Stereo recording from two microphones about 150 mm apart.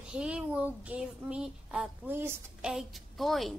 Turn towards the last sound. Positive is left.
turn(degrees=0)  # may be behind; listen again after turning